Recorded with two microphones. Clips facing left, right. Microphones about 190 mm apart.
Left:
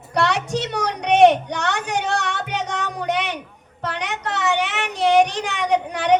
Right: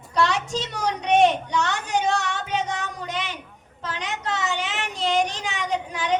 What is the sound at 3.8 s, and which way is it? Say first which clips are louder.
Child singing: left 3 dB; 65° left (ahead or behind).